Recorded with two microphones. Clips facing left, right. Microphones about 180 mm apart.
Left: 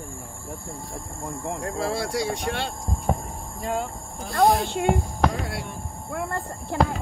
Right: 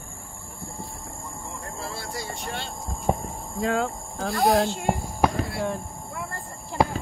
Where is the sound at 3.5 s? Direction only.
90° right.